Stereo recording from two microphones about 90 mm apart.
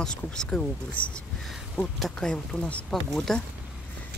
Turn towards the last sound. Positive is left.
turn(degrees=5)  # may be behind; listen again after turning